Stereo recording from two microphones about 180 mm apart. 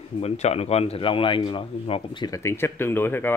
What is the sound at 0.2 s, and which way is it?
Speech, 35° left (ahead or behind).